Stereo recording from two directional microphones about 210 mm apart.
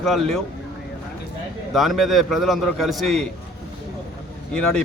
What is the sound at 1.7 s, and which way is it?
A man's voice, centre (ahead or behind).